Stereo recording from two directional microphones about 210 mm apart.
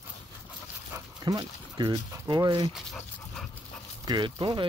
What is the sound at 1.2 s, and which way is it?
Speech, 20° right (ahead or behind).